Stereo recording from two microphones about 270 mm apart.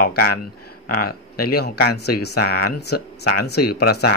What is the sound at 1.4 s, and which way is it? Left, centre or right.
Speech, left.